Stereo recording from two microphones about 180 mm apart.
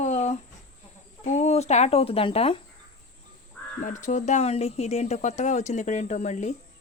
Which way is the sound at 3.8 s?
45° left (ahead or behind).